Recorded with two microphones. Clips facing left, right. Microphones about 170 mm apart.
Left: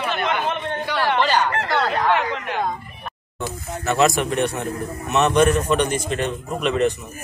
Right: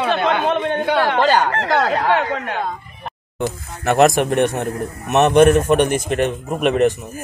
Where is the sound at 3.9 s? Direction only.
55° right (ahead or behind).